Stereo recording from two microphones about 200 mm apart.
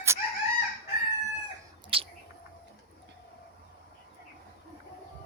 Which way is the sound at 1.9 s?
30° right (ahead or behind).